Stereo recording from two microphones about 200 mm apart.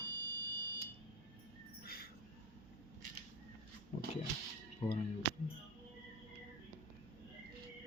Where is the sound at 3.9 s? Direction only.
35° left (ahead or behind).